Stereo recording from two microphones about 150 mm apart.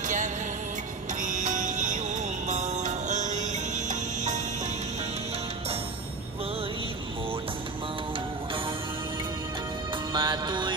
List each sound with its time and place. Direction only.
1.2 s music: 55° right (ahead or behind)
10.1 s music: 30° right (ahead or behind)